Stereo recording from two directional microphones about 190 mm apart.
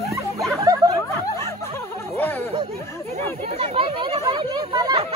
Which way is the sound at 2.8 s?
15° left (ahead or behind).